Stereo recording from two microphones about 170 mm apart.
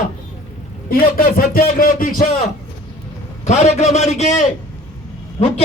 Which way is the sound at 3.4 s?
40° left (ahead or behind).